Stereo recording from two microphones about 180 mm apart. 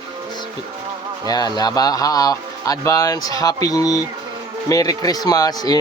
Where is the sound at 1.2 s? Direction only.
20° left (ahead or behind).